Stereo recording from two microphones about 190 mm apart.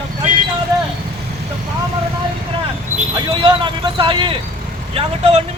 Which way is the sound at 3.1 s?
25° right (ahead or behind).